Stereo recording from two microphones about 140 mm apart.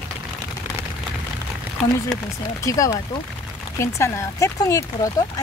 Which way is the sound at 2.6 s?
25° left (ahead or behind).